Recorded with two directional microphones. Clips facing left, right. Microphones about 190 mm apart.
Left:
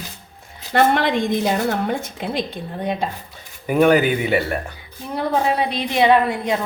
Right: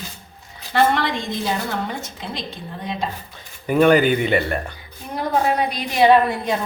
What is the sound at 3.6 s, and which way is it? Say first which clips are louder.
Speech: even; 5° left (ahead or behind).